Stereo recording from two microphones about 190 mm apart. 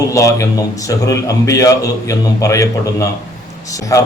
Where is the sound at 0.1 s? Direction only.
15° left (ahead or behind).